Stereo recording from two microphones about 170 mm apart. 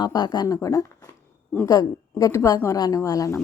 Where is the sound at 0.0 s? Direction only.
25° left (ahead or behind).